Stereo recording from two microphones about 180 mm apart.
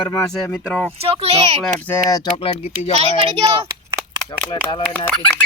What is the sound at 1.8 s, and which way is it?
Speech, 15° left (ahead or behind).